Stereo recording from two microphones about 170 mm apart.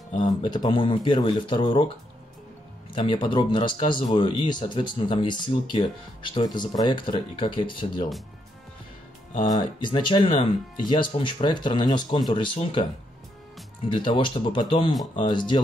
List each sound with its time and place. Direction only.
0.2 s speech: 30° left (ahead or behind)
2.9 s speech: 30° left (ahead or behind)
9.4 s speech: 25° left (ahead or behind)
13.9 s speech: 30° left (ahead or behind)